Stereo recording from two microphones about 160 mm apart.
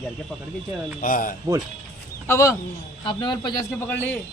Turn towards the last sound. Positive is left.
turn(degrees=10)  # may be behind; listen again after turning